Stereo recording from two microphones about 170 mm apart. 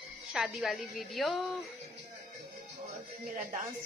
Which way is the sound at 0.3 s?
5° right (ahead or behind).